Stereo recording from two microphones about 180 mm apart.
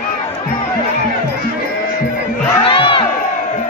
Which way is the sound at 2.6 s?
30° left (ahead or behind).